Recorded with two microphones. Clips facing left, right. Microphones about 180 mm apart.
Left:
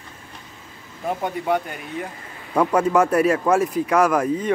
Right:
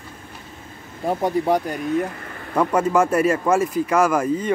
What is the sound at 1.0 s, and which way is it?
Speech, 35° right (ahead or behind).